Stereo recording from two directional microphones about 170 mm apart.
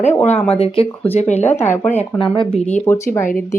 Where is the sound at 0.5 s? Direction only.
35° left (ahead or behind).